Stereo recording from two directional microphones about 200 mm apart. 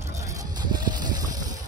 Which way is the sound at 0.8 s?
20° right (ahead or behind).